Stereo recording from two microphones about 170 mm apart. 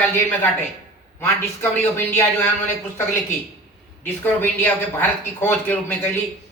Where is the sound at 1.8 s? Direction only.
15° left (ahead or behind).